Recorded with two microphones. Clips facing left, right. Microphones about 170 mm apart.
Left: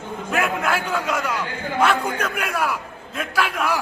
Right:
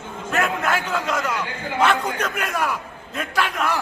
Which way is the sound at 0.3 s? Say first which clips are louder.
Even; 10° left (ahead or behind).